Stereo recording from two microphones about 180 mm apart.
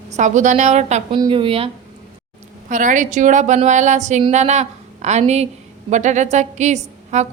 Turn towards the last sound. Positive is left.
turn(degrees=-40)  # may be behind; listen again after turning